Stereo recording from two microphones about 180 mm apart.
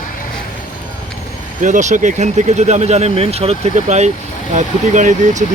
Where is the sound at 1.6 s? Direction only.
45° right (ahead or behind).